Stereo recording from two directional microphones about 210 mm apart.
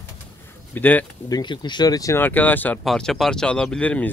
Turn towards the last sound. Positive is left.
turn(degrees=5)  # may be behind; listen again after turning